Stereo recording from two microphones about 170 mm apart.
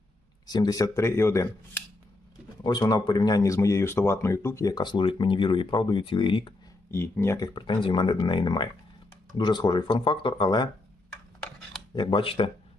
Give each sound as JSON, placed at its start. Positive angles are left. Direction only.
{"t": 0.4, "sound": "speech", "side_deg": 25}
{"t": 2.6, "sound": "speech", "side_deg": 25}
{"t": 6.9, "sound": "speech", "side_deg": 15}
{"t": 11.9, "sound": "speech", "side_deg": 30}